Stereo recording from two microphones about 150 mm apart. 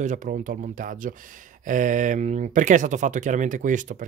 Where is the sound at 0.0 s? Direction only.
55° right (ahead or behind).